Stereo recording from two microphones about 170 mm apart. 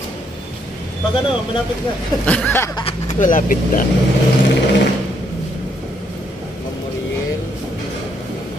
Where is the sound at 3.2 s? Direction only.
50° left (ahead or behind).